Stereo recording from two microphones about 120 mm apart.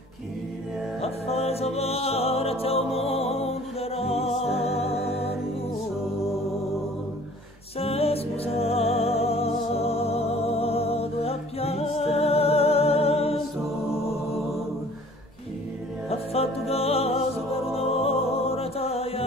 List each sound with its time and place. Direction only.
1.0 s music: 60° left (ahead or behind)
7.8 s music: 55° left (ahead or behind)
14.3 s mantra: centre (ahead or behind)
16.1 s music: 55° left (ahead or behind)